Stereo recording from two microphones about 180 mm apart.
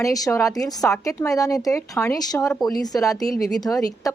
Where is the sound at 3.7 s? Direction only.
10° left (ahead or behind).